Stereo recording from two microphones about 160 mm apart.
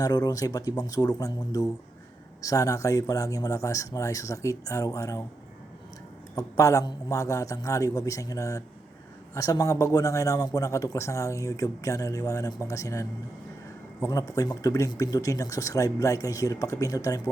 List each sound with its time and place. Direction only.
0.0 s a man's voice: 25° left (ahead or behind)
6.3 s a man's voice: 20° left (ahead or behind)